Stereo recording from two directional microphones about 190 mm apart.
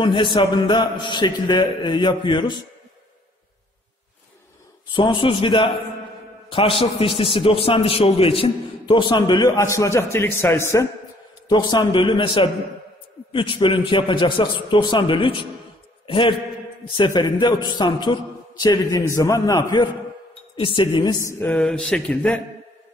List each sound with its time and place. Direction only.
0.0 s a man's voice: 25° left (ahead or behind)
4.9 s a man's voice: 25° left (ahead or behind)
6.8 s a man's voice: 30° left (ahead or behind); by 22.4 s 5° left (ahead or behind)